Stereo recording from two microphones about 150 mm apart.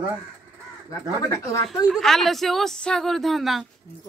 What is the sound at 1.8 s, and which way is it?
A woman's voice, centre (ahead or behind).